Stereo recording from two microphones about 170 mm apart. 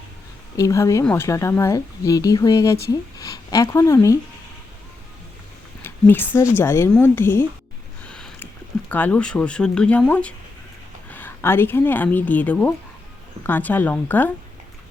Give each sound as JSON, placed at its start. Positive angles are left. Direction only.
{"t": 0.5, "sound": "speech", "side_deg": 20}
{"t": 5.8, "sound": "speech", "side_deg": 10}
{"t": 8.1, "sound": "a sound", "side_deg": 5}
{"t": 8.9, "sound": "a woman's voice", "side_deg": 10}